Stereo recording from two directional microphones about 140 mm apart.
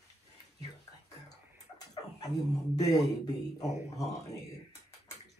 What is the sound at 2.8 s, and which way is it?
Speech, 25° left (ahead or behind).